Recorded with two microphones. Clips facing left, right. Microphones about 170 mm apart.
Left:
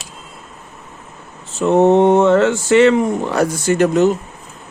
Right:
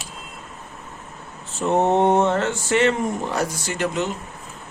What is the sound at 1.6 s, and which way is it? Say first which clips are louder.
Speech: left 7 dB; 90° left.